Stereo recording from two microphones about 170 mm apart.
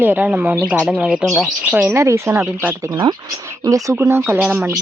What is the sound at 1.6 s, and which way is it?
Speech, 10° right (ahead or behind).